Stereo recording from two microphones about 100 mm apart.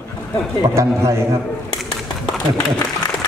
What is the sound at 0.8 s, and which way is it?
Speech, 30° right (ahead or behind).